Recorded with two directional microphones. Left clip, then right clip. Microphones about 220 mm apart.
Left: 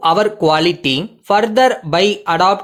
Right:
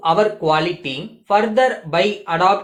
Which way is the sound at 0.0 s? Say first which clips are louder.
Left 3 dB; 50° left (ahead or behind).